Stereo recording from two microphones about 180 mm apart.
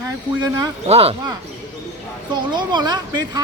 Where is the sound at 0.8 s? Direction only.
35° right (ahead or behind).